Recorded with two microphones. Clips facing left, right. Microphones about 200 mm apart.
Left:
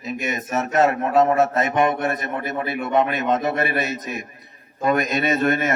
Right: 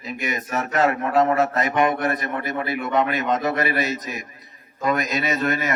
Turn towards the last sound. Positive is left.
turn(degrees=25)  # may be behind; listen again after turning